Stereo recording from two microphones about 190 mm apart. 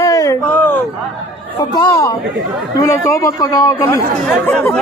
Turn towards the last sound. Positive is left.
turn(degrees=10)  # may be behind; listen again after turning